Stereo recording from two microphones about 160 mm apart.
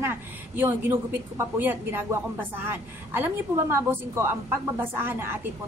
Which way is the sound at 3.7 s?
15° right (ahead or behind).